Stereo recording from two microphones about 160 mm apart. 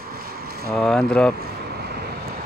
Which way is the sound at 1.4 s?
90° right.